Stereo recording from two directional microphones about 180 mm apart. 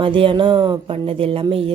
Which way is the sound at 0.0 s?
30° right (ahead or behind).